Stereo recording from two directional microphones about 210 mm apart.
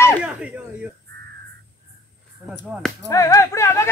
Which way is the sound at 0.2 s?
5° right (ahead or behind).